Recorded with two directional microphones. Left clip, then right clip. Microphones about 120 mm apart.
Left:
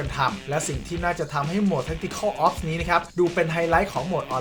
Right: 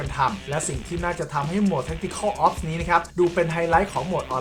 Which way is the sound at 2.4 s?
15° left (ahead or behind).